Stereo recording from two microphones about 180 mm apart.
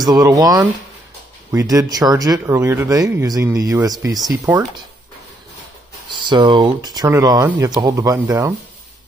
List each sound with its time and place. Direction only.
0.0 s speech: 20° right (ahead or behind)
4.3 s speech: 10° right (ahead or behind)
6.0 s speech: 25° right (ahead or behind)